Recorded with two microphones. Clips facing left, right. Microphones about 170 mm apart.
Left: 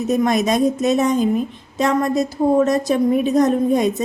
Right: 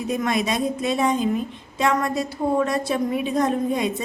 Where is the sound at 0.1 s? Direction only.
40° left (ahead or behind).